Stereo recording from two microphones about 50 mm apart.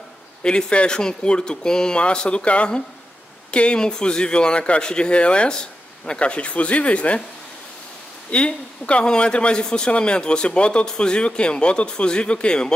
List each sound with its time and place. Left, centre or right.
0.4 s a man's voice: centre
8.3 s a man's voice: left